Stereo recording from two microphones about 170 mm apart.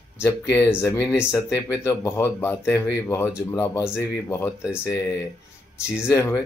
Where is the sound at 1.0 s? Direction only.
15° left (ahead or behind).